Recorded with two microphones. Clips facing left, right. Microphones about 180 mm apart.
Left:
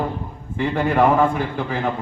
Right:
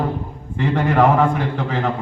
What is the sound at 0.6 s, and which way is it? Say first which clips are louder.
Speech: right 1 dB; 85° right.